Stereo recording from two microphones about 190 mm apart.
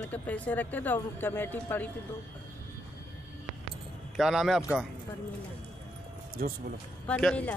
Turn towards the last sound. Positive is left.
turn(degrees=5)  # may be behind; listen again after turning